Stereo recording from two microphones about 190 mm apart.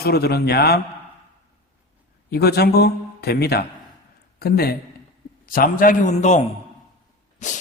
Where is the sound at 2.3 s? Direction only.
55° left (ahead or behind); by 6.4 s 40° left (ahead or behind).